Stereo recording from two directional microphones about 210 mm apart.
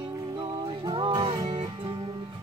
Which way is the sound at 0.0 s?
20° right (ahead or behind).